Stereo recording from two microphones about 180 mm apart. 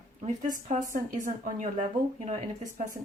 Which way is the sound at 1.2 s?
45° right (ahead or behind).